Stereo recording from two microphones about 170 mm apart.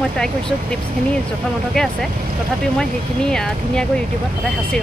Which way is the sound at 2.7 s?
5° left (ahead or behind).